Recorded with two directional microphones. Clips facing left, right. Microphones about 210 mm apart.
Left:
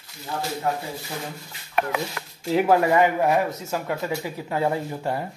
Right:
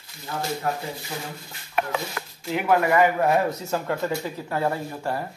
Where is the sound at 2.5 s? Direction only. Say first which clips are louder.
Left 2 dB; 30° left (ahead or behind).